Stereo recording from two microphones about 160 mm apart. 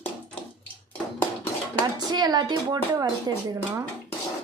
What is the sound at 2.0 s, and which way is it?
A woman's voice, 25° right (ahead or behind).